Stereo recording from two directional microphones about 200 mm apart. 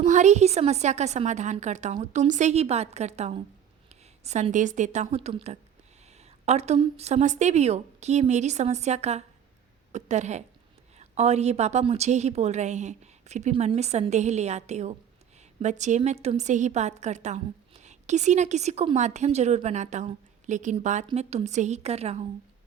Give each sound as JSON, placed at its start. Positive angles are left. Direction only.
{"t": 0.0, "sound": "a woman's voice", "side_deg": -35}